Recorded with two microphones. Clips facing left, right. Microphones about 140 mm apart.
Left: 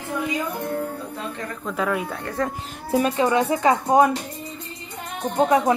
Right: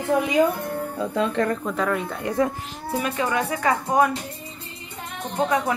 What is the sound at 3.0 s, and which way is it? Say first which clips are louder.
A woman's voice: left 5 dB; 25° left (ahead or behind).